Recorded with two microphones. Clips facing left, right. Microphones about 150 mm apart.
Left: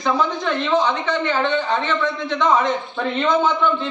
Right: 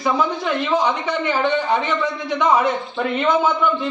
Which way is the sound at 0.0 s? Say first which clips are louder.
Even; 10° right (ahead or behind).